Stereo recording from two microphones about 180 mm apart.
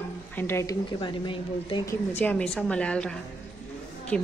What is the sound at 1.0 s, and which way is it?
Speech, 25° left (ahead or behind).